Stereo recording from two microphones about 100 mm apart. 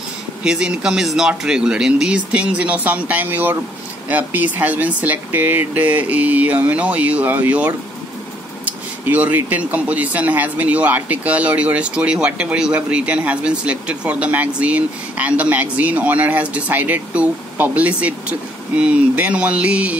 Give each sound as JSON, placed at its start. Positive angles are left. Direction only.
{"t": 0.4, "sound": "speech", "side_deg": -10}
{"t": 8.6, "sound": "a sound", "side_deg": -15}
{"t": 9.4, "sound": "speech", "side_deg": -15}